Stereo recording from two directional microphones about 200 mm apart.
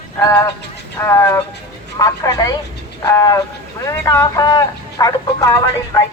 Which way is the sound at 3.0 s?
15° left (ahead or behind).